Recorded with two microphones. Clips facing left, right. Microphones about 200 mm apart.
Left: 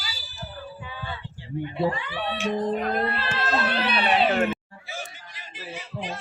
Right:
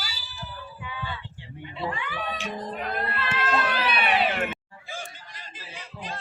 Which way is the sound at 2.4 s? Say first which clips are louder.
Left 8 dB; 35° left (ahead or behind).